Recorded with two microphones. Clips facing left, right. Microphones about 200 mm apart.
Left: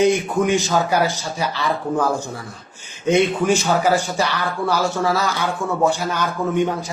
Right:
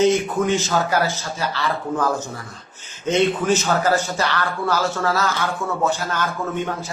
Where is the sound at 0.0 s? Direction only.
15° left (ahead or behind).